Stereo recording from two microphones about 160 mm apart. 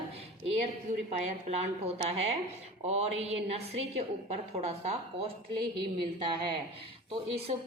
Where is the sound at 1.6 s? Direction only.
40° right (ahead or behind).